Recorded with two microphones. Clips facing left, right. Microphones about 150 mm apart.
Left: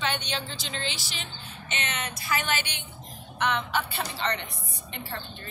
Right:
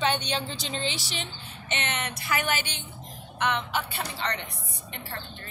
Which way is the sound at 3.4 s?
15° right (ahead or behind).